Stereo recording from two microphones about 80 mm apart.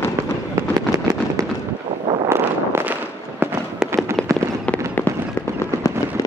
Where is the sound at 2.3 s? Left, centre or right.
Right.